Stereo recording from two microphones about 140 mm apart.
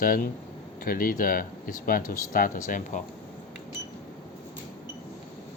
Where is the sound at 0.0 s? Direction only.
90° left; by 3.0 s 70° left (ahead or behind).